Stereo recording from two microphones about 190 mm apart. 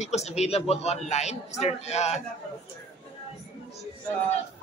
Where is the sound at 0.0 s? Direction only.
35° left (ahead or behind).